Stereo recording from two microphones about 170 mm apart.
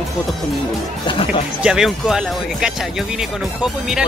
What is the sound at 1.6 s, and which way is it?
Speech, 5° right (ahead or behind).